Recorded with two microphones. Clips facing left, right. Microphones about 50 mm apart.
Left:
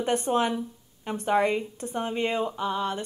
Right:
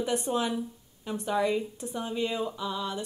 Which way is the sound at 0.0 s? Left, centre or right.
Left.